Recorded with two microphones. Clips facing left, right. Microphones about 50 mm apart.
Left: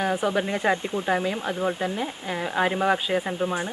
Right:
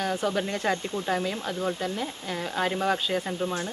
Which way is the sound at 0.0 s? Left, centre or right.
Left.